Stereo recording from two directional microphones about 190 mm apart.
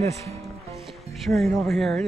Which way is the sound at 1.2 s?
Centre (ahead or behind).